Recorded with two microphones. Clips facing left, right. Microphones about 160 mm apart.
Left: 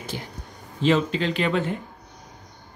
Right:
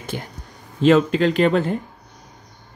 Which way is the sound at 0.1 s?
55° right (ahead or behind).